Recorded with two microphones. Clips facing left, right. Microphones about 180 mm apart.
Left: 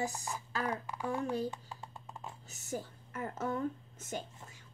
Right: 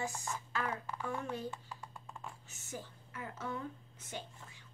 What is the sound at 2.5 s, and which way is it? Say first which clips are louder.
Speech: left 9 dB; 40° left (ahead or behind).